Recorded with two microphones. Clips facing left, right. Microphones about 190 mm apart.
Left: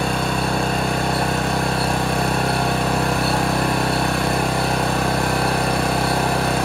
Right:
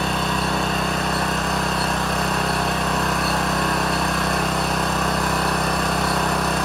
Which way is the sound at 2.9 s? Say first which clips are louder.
Left 3 dB; 30° left (ahead or behind).